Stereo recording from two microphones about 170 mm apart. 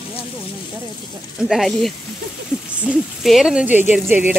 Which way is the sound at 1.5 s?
Centre (ahead or behind).